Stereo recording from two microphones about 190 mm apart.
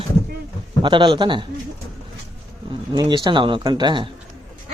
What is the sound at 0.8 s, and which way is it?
Speech, 25° right (ahead or behind).